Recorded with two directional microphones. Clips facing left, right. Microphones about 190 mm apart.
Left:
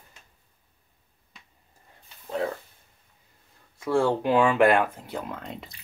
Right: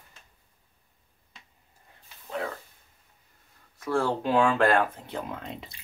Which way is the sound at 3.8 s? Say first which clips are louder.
Left 4 dB; 25° left (ahead or behind).